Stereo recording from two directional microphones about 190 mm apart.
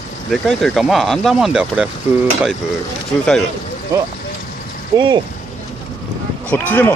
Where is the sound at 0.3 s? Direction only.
Centre (ahead or behind).